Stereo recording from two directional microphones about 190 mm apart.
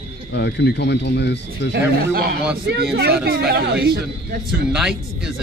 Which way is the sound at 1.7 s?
55° right (ahead or behind).